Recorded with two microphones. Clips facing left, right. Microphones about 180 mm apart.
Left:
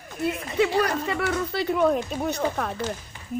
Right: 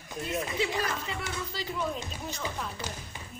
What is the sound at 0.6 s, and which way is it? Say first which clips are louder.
Speech: left 13 dB; 65° left (ahead or behind).